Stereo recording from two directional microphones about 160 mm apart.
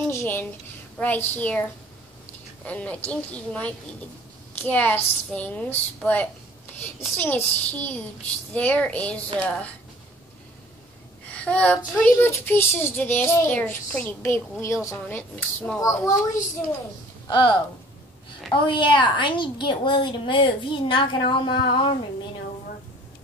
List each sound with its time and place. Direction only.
0.1 s a woman's voice: 15° left (ahead or behind)
2.6 s a woman's voice: 10° left (ahead or behind)
11.2 s a woman's voice: 10° left (ahead or behind)
17.3 s a woman's voice: 30° left (ahead or behind)
21.3 s a sound: 30° left (ahead or behind)